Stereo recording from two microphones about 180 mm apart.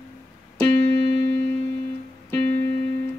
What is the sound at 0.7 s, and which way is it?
Music, 35° right (ahead or behind).